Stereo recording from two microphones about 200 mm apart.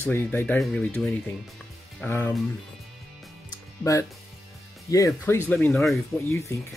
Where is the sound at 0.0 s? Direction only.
10° left (ahead or behind).